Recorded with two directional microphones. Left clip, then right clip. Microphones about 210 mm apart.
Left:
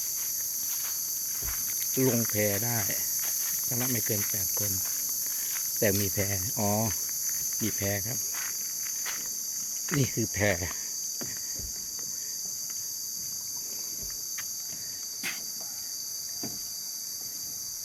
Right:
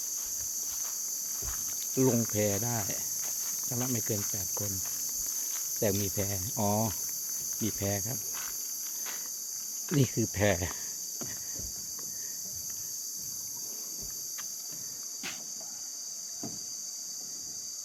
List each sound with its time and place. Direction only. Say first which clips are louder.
2.0 s cricket: even; 5° right (ahead or behind)
5.8 s cricket: left 3 dB; centre (ahead or behind)
7.6 s speech: left 1 dB; 10° right (ahead or behind)
10.0 s speech: even; 15° right (ahead or behind)